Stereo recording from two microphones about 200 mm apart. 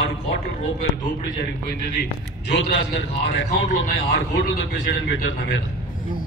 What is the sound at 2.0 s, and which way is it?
A man's voice, 60° left (ahead or behind).